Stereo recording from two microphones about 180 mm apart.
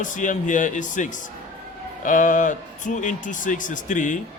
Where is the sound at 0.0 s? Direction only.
45° left (ahead or behind).